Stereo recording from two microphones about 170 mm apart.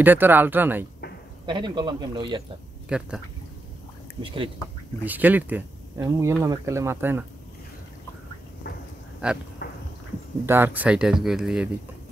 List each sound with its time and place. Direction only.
0.0 s speech: 10° right (ahead or behind)
1.4 s a man's voice: 25° right (ahead or behind)
2.9 s speech: 5° right (ahead or behind)
5.0 s speech: 10° right (ahead or behind)
8.6 s a sound: 70° left (ahead or behind)
9.2 s speech: 5° right (ahead or behind)
9.6 s a sound: 75° left (ahead or behind)
10.4 s speech: 15° right (ahead or behind)